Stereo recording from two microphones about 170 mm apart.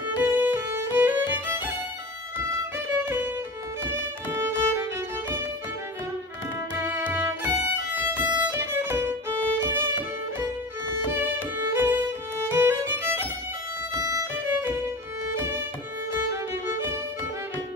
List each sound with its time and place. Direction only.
0.2 s music: 10° right (ahead or behind)
2.9 s music: 10° right (ahead or behind)
3.9 s violin: 15° right (ahead or behind)
7.1 s music: 10° right (ahead or behind)
8.4 s violin: 10° right (ahead or behind)
11.7 s music: 15° right (ahead or behind)
14.4 s violin: 10° right (ahead or behind)
16.1 s music: 15° right (ahead or behind)